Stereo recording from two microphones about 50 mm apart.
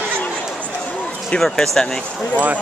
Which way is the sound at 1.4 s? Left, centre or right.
Centre.